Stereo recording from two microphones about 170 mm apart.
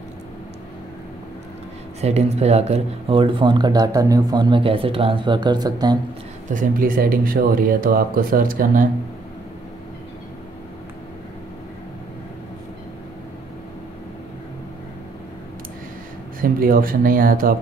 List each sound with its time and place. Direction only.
2.0 s speech: 40° right (ahead or behind); by 5.9 s 25° right (ahead or behind)
6.5 s speech: 55° right (ahead or behind)
16.3 s speech: 55° right (ahead or behind)